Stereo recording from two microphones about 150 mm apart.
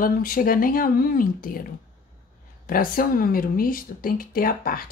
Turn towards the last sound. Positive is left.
turn(degrees=70)  # may be behind; listen again after turning